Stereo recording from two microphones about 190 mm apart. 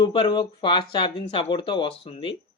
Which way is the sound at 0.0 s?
25° left (ahead or behind).